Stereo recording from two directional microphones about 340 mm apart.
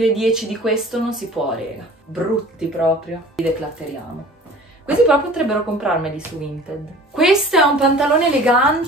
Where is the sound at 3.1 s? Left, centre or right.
Left.